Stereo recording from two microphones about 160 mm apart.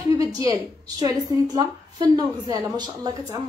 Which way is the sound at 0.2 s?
20° right (ahead or behind).